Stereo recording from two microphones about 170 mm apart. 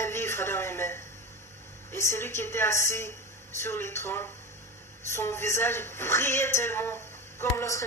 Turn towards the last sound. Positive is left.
turn(degrees=15)  # may be behind; listen again after turning